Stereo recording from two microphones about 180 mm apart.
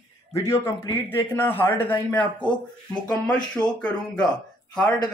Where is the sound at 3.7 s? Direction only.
5° left (ahead or behind).